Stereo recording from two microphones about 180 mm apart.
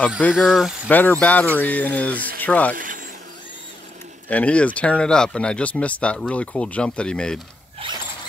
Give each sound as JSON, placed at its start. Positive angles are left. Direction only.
{"t": 0.2, "sound": "speech", "side_deg": 0}
{"t": 0.8, "sound": "speech", "side_deg": 10}
{"t": 2.4, "sound": "rub", "side_deg": 10}
{"t": 2.7, "sound": "speech", "side_deg": -50}
{"t": 4.3, "sound": "speech", "side_deg": 5}
{"t": 7.8, "sound": "mechanisms", "side_deg": -30}